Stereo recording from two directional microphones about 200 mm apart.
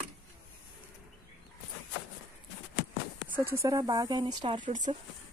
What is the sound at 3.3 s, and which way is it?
A woman's voice, 10° right (ahead or behind).